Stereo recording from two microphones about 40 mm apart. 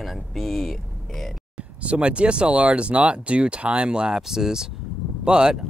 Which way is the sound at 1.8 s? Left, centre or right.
Right.